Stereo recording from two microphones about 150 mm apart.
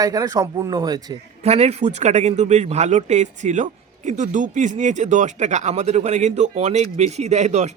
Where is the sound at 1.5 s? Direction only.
45° right (ahead or behind).